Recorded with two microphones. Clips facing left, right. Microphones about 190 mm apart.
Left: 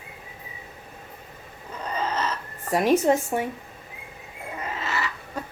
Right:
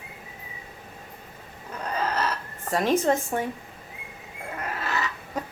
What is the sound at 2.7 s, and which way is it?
Speech, 10° left (ahead or behind).